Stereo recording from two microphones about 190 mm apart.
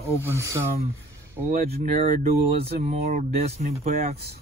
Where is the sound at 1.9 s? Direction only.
40° right (ahead or behind).